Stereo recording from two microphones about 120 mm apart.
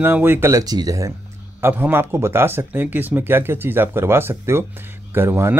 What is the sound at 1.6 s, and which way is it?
Speech, 20° right (ahead or behind).